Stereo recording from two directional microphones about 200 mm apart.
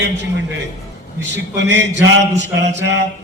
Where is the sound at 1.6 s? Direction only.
60° right (ahead or behind).